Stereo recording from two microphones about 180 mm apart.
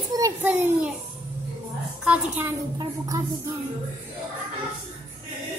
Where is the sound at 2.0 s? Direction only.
10° right (ahead or behind).